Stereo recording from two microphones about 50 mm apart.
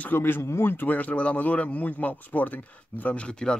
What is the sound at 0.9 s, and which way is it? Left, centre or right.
Speech, left.